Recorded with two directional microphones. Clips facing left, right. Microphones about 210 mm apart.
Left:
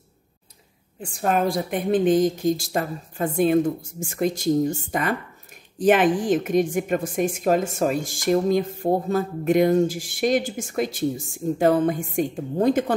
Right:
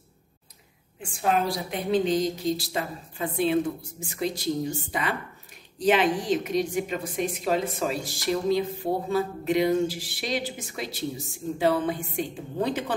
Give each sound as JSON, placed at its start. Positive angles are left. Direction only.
{"t": 1.0, "sound": "a woman's voice", "side_deg": 45}